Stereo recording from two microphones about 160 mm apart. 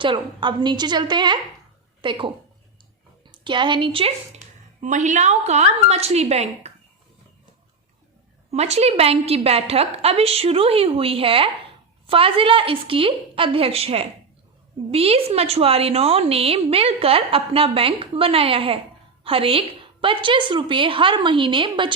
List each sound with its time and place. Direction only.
0.0 s a woman's voice: 30° right (ahead or behind)
3.3 s a woman's voice: 30° right (ahead or behind)
4.8 s a woman's voice: 50° right (ahead or behind)
8.4 s a woman's voice: 40° right (ahead or behind)